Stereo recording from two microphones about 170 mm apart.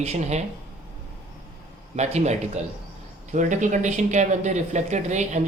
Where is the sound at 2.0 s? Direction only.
40° right (ahead or behind).